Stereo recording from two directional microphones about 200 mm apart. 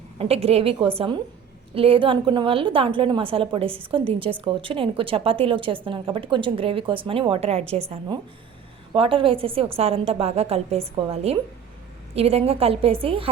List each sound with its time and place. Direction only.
0.2 s a woman's voice: 30° right (ahead or behind)